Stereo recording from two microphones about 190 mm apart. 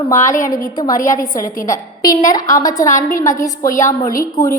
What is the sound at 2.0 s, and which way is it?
Speech, 20° left (ahead or behind).